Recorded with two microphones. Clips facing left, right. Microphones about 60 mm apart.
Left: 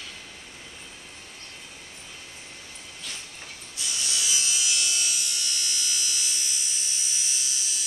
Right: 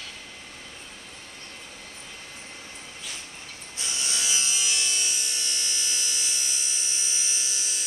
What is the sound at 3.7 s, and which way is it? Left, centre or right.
Electric shaver, right.